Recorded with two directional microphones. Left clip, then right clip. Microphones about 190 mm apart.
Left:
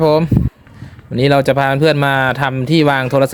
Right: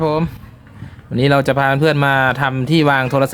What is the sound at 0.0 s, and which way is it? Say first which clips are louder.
Speech: left 6 dB; 20° left (ahead or behind).